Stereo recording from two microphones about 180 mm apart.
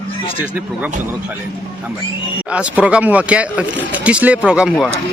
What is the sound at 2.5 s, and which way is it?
Speech, 5° right (ahead or behind).